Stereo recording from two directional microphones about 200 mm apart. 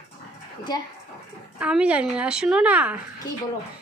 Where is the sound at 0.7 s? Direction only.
20° left (ahead or behind).